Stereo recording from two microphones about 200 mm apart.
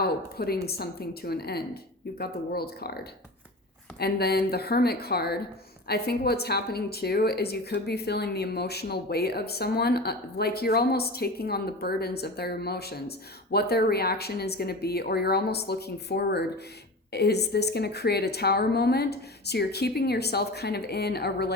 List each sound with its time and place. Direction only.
0.0 s speech: 50° left (ahead or behind)